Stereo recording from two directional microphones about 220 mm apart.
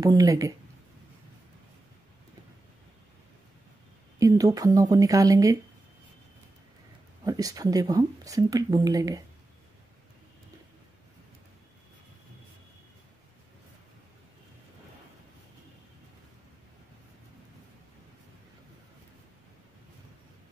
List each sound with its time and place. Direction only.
0.0 s speech: 15° right (ahead or behind)
4.2 s speech: 15° right (ahead or behind)
7.2 s speech: 15° right (ahead or behind)